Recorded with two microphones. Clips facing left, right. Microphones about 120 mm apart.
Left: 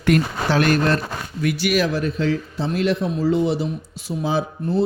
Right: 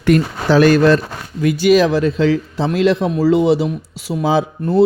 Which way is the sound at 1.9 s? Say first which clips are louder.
Right 7 dB; 90° right.